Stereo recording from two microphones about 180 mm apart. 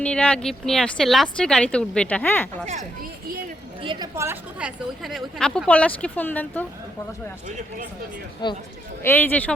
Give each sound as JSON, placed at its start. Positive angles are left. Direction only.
{"t": 0.0, "sound": "speech", "side_deg": 5}
{"t": 2.6, "sound": "speech", "side_deg": -40}
{"t": 3.8, "sound": "a woman's voice", "side_deg": -20}
{"t": 5.0, "sound": "speech", "side_deg": 0}
{"t": 8.4, "sound": "speech", "side_deg": 25}
{"t": 9.0, "sound": "speech", "side_deg": 10}